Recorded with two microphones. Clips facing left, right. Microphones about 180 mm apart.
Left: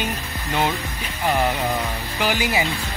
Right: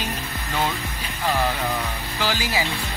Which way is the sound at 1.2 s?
15° left (ahead or behind).